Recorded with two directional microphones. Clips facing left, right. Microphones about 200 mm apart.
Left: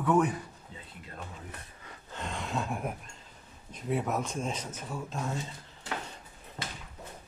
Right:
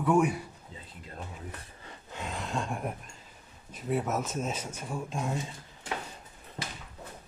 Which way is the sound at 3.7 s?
Centre (ahead or behind).